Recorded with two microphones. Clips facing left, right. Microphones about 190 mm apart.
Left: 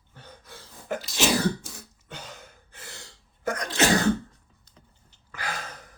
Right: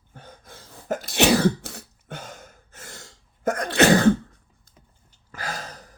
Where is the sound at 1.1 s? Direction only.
65° right (ahead or behind).